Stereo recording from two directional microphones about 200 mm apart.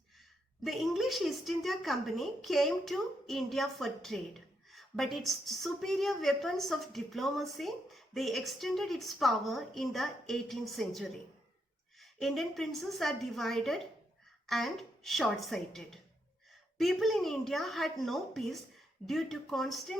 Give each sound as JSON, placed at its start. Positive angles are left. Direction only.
{"t": 0.6, "sound": "a woman's voice", "side_deg": 0}